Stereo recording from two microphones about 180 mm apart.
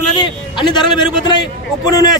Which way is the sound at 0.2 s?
25° left (ahead or behind).